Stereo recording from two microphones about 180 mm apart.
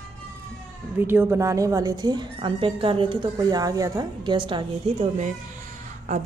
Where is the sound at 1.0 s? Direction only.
10° right (ahead or behind); by 5.1 s 30° right (ahead or behind).